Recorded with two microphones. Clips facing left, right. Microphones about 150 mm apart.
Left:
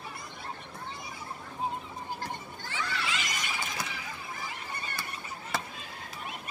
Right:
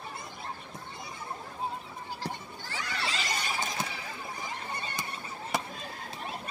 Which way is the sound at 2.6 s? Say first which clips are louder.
Left 1 dB; 40° right (ahead or behind).